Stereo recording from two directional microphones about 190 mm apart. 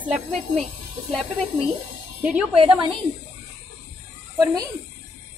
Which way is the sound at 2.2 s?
5° right (ahead or behind).